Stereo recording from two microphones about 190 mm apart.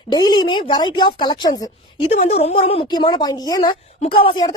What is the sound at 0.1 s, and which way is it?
A woman's voice, 20° left (ahead or behind).